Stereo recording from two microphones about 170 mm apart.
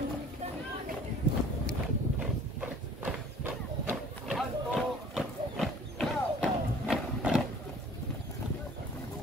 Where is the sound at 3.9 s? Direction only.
Centre (ahead or behind).